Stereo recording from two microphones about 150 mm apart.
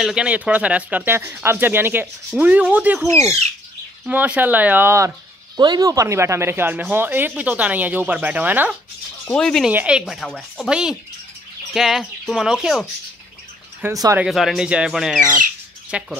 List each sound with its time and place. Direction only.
0.0 s speech: 5° right (ahead or behind)
3.1 s speech: 20° left (ahead or behind)
4.0 s speech: 10° right (ahead or behind)
9.3 s speech: 5° left (ahead or behind)
9.7 s speech: 10° right (ahead or behind)
14.1 s speech: 5° right (ahead or behind)